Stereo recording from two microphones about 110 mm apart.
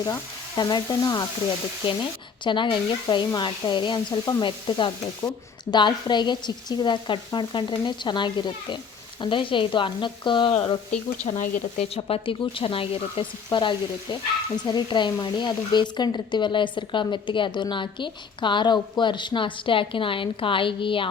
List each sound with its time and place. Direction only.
0.0 s frying: 35° left (ahead or behind)
2.4 s frying: 45° left (ahead or behind)
11.3 s speech: 55° left (ahead or behind)
13.5 s frying: 45° left (ahead or behind)